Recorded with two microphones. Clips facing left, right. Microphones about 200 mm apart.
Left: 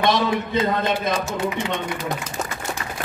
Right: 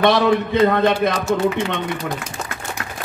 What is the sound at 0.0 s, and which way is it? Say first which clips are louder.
A man's voice: right 5 dB; 60° right (ahead or behind).